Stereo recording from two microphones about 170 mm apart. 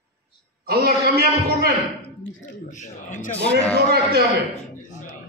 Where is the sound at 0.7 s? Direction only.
65° right (ahead or behind).